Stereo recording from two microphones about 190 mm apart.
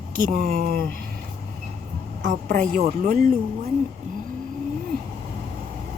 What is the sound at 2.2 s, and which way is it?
A woman's voice, 45° right (ahead or behind).